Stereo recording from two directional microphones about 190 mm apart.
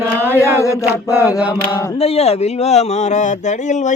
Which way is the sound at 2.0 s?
30° left (ahead or behind).